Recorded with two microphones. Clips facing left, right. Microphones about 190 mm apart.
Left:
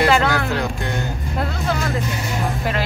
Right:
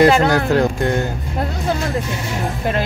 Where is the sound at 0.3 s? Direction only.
45° right (ahead or behind).